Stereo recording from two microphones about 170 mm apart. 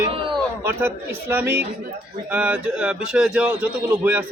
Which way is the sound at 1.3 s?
10° right (ahead or behind).